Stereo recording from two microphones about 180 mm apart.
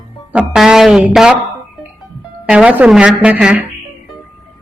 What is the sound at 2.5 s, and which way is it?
Speech, 5° right (ahead or behind).